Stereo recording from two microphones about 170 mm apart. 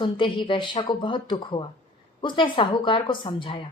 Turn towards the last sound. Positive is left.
turn(degrees=30)  # may be behind; listen again after turning